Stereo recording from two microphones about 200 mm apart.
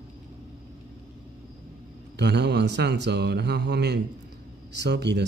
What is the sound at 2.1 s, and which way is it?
Speech, 60° right (ahead or behind).